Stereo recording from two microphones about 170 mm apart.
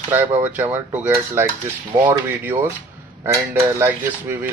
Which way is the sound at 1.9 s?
25° right (ahead or behind).